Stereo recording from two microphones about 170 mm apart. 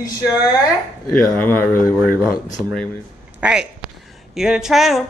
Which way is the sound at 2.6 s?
10° right (ahead or behind).